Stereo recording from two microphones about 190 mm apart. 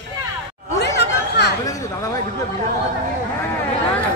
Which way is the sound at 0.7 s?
60° left (ahead or behind).